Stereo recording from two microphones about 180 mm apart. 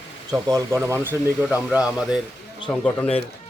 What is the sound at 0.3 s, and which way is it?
A man's voice, 20° right (ahead or behind).